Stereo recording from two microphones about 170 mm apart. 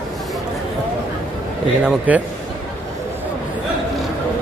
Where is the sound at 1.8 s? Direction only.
10° right (ahead or behind).